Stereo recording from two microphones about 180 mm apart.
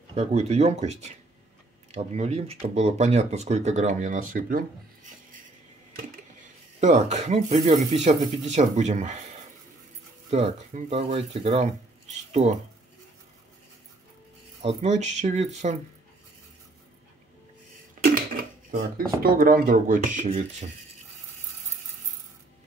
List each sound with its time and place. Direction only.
0.1 s speech: 35° right (ahead or behind)
6.8 s speech: 40° right (ahead or behind)
10.3 s speech: 35° right (ahead or behind)
14.6 s speech: 35° right (ahead or behind)
18.3 s dishes: 50° right (ahead or behind)
19.2 s speech: 55° right (ahead or behind); by 20.7 s 40° right (ahead or behind)